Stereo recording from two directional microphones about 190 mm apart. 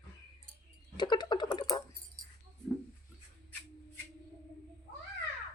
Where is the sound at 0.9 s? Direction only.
25° left (ahead or behind).